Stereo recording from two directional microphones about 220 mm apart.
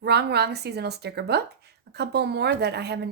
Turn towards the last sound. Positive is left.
turn(degrees=-50)  # may be behind; listen again after turning